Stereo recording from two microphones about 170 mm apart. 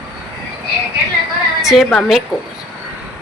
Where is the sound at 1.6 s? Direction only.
Centre (ahead or behind).